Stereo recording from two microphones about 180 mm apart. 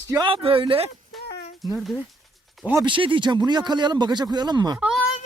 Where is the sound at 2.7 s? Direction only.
25° right (ahead or behind).